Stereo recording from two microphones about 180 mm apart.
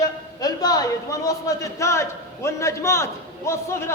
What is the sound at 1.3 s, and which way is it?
A man's voice, 15° left (ahead or behind).